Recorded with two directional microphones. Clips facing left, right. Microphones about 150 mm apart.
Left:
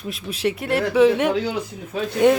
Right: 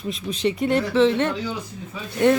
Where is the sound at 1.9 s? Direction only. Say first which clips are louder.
Left 11 dB; 85° left.